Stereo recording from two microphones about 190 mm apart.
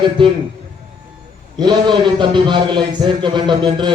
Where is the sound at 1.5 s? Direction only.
25° right (ahead or behind).